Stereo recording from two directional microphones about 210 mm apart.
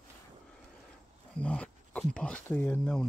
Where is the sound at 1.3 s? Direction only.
5° left (ahead or behind).